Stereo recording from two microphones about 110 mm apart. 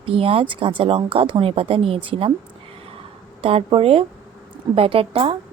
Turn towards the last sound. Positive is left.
turn(degrees=-55)  # may be behind; listen again after turning